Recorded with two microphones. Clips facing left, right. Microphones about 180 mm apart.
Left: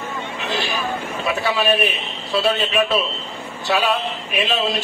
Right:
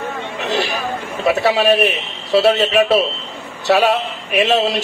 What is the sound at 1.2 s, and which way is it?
A man's voice, 75° right (ahead or behind).